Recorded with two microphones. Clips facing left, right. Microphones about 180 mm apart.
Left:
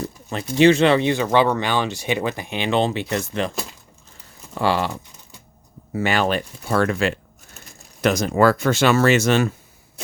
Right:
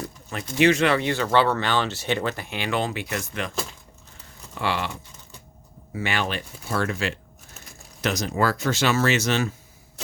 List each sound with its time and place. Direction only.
0.0 s a sound: 25° left (ahead or behind)
0.5 s speech: 30° left (ahead or behind)
4.5 s speech: 40° left (ahead or behind)
5.9 s speech: 45° left (ahead or behind)
6.7 s speech: 60° left (ahead or behind)